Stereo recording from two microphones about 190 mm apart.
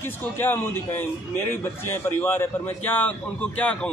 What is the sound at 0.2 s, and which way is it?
Speech, 10° left (ahead or behind).